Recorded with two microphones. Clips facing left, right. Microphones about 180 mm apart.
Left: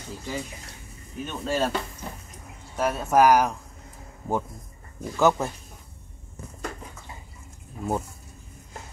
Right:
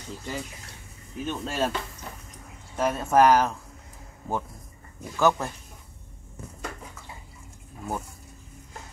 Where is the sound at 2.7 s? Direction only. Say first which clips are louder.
Even; 5° left (ahead or behind).